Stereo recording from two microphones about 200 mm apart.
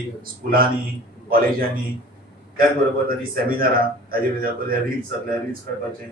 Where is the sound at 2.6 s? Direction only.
45° right (ahead or behind).